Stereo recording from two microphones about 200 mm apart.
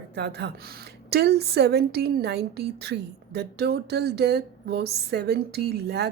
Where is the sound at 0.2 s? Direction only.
55° right (ahead or behind).